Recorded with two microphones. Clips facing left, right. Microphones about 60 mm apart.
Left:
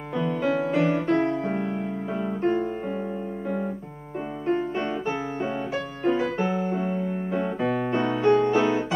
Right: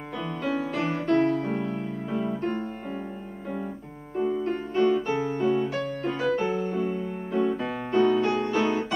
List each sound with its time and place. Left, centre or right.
0.1 s music: centre
1.1 s music: left
4.5 s music: centre
5.7 s music: centre
6.7 s music: left
7.5 s piano: centre
8.2 s music: centre